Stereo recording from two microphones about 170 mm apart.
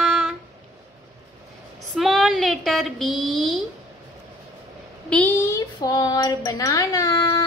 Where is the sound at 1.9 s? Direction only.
Centre (ahead or behind).